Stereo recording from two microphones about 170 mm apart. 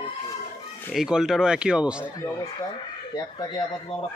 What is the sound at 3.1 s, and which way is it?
Speech, 25° left (ahead or behind).